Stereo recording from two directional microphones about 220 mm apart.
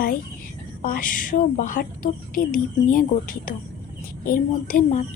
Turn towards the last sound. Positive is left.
turn(degrees=35)  # may be behind; listen again after turning